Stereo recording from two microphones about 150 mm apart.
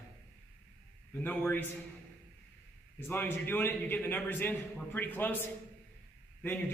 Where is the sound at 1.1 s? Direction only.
10° left (ahead or behind).